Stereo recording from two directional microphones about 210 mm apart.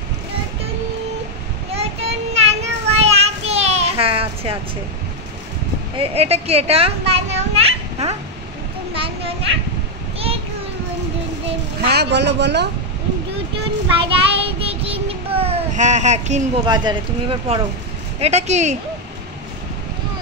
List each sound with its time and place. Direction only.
1.7 s child singing: 30° right (ahead or behind)
5.9 s a woman's voice: 30° right (ahead or behind)
8.9 s a sound: 25° right (ahead or behind)
11.8 s speech: 50° right (ahead or behind)
14.0 s child singing: 25° right (ahead or behind)
16.6 s speech: 20° right (ahead or behind)